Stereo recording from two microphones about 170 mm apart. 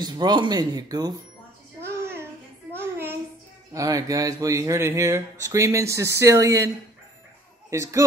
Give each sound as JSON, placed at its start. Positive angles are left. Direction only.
{"t": 0.0, "sound": "speech", "side_deg": -25}
{"t": 2.7, "sound": "child singing", "side_deg": -10}
{"t": 3.7, "sound": "speech", "side_deg": -20}
{"t": 7.7, "sound": "speech", "side_deg": -15}